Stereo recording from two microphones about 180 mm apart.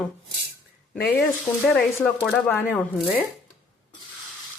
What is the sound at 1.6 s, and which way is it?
Speech, 5° left (ahead or behind).